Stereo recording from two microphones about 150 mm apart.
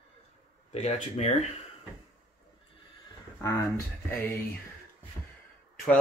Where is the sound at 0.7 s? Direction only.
45° left (ahead or behind).